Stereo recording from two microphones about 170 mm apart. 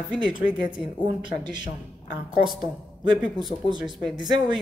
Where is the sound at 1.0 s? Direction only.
25° right (ahead or behind).